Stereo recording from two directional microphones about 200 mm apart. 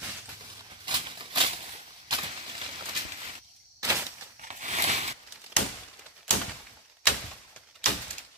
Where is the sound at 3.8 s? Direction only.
15° right (ahead or behind).